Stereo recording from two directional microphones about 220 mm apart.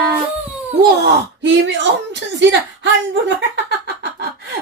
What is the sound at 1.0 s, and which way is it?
Speech, 55° right (ahead or behind).